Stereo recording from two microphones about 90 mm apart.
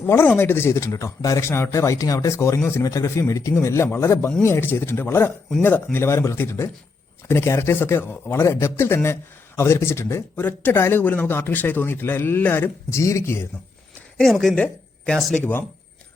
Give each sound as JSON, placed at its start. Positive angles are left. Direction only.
{"t": 0.0, "sound": "a man's voice", "side_deg": 30}
{"t": 2.8, "sound": "a man's voice", "side_deg": 35}
{"t": 14.2, "sound": "a woman's voice", "side_deg": 5}